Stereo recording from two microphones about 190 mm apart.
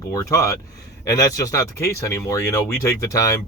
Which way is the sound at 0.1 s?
20° left (ahead or behind).